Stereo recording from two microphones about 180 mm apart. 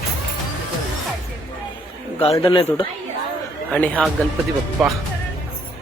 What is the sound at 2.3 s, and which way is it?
Speech, 25° left (ahead or behind).